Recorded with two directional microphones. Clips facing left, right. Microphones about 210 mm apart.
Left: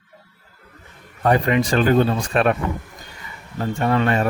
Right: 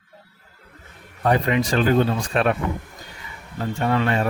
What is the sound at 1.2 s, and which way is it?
Speech, 50° left (ahead or behind).